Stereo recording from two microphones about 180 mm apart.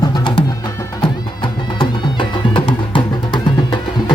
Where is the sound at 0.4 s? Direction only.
30° left (ahead or behind).